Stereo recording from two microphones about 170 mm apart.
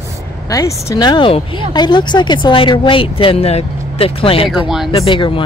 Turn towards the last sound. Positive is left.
turn(degrees=30)  # may be behind; listen again after turning